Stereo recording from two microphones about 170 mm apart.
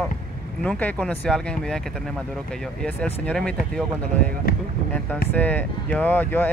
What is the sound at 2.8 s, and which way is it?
Speech, 5° left (ahead or behind).